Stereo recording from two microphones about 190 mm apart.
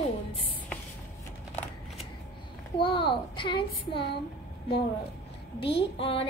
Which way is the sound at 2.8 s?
25° left (ahead or behind).